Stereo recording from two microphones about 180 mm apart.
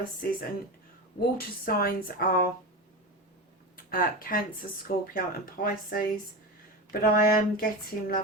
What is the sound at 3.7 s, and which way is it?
Speech, 50° left (ahead or behind).